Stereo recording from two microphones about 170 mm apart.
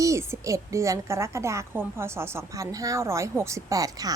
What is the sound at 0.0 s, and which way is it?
A woman's voice, 15° right (ahead or behind).